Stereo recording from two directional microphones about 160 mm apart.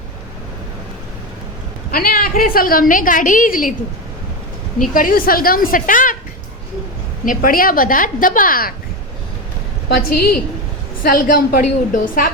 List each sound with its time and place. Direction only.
1.9 s a woman's voice: 65° left (ahead or behind)
4.9 s a woman's voice: 60° left (ahead or behind)
7.3 s a woman's voice: 60° left (ahead or behind)
9.9 s a woman's voice: 70° left (ahead or behind)